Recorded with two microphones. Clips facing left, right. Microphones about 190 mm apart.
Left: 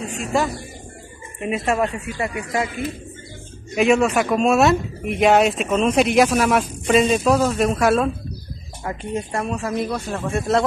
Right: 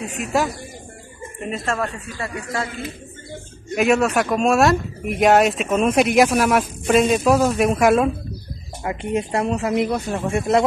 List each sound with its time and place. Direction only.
0.1 s speech: centre (ahead or behind)
1.4 s speech: 10° left (ahead or behind)
3.7 s speech: centre (ahead or behind)